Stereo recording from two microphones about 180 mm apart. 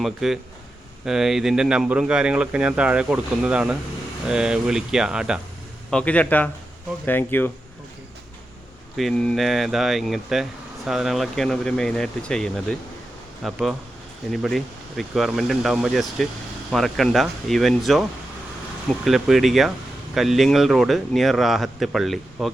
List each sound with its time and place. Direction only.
0.0 s speech: centre (ahead or behind)
5.9 s a man's voice: 5° left (ahead or behind)
9.0 s speech: 5° left (ahead or behind)
19.0 s speech: centre (ahead or behind)